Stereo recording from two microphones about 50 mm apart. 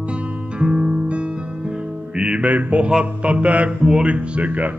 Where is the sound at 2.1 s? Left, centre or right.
Right.